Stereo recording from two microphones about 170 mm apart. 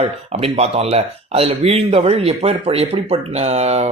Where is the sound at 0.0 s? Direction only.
35° right (ahead or behind).